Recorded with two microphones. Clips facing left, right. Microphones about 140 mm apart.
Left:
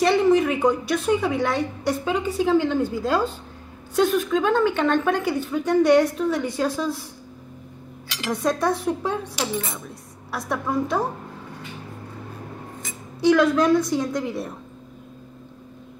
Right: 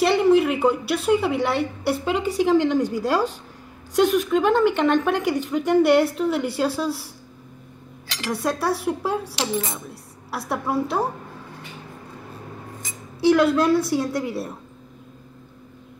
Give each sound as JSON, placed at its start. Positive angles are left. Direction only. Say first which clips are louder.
{"t": 0.0, "sound": "a sound", "louder": "right 1 dB", "side_deg": -10}
{"t": 1.0, "sound": "a woman's voice", "louder": "right 2 dB", "side_deg": -10}
{"t": 8.3, "sound": "a woman's voice", "louder": "left 1 dB", "side_deg": -5}
{"t": 13.2, "sound": "a woman's voice", "louder": "even", "side_deg": -10}